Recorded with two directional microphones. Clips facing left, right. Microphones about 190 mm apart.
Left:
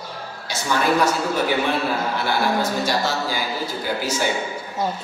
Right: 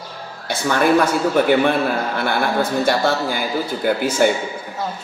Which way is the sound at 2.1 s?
55° right (ahead or behind).